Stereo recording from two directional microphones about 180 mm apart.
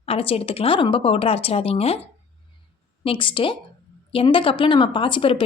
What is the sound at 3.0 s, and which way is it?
A woman's voice, 30° left (ahead or behind).